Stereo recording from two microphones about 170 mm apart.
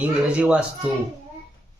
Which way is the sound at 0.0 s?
5° right (ahead or behind).